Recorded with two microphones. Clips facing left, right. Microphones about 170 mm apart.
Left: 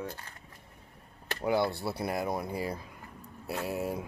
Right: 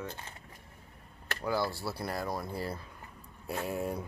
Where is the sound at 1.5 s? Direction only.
25° left (ahead or behind).